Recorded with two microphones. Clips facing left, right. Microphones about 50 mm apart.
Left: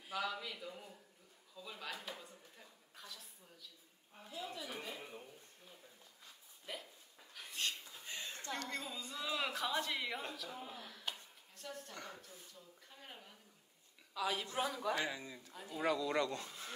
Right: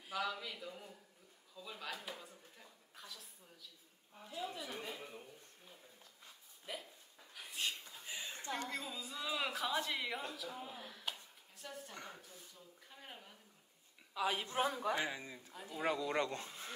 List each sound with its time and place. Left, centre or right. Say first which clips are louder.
0.0 s speech: even; centre
1.5 s a sound: right 1 dB; centre
6.6 s hiccup: right 1 dB; centre
7.9 s a sound: even; centre
14.1 s speech: right 2 dB; right
15.0 s speech: even; right
15.5 s speech: left 1 dB; centre
15.8 s speech: left 1 dB; right